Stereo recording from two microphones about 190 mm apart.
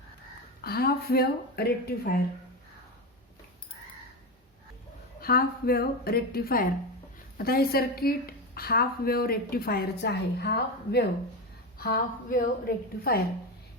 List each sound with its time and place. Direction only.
0.6 s speech: 55° left (ahead or behind)
5.2 s a woman's voice: 50° left (ahead or behind)